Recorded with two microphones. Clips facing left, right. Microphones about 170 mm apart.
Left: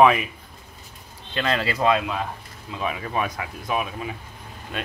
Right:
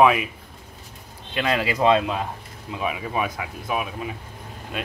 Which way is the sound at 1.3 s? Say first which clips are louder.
Right 1 dB; 10° right (ahead or behind).